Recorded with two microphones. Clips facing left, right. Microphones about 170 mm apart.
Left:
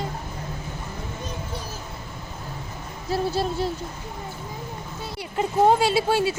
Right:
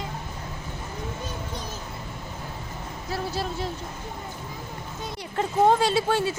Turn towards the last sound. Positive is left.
turn(degrees=10)  # may be behind; listen again after turning